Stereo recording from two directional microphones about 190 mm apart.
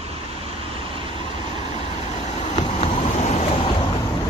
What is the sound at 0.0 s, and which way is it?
Vehicle, 30° right (ahead or behind).